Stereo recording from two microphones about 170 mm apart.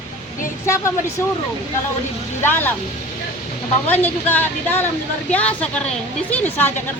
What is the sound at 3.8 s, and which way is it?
A woman's voice, 10° left (ahead or behind).